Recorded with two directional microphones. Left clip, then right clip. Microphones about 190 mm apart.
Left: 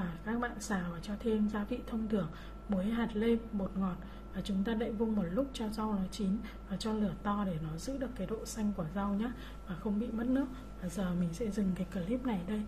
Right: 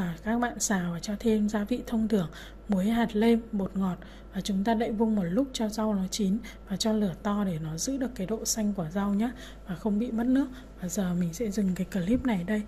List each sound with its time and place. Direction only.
0.0 s a sound: 35° right (ahead or behind)
1.5 s speech: 35° right (ahead or behind)
4.4 s speech: 35° right (ahead or behind)